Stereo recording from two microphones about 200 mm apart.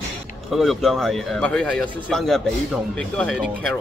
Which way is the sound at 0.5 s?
Centre (ahead or behind).